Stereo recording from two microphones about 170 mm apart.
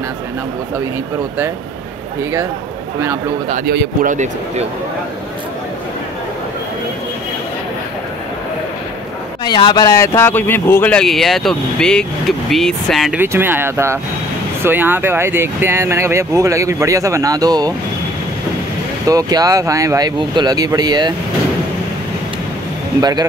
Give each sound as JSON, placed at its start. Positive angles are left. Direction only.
{"t": 3.6, "sound": "speech", "side_deg": -80}
{"t": 4.0, "sound": "speech", "side_deg": -45}
{"t": 9.4, "sound": "speech", "side_deg": 25}
{"t": 13.2, "sound": "speech", "side_deg": -10}
{"t": 19.0, "sound": "speech", "side_deg": -20}
{"t": 22.9, "sound": "speech", "side_deg": -25}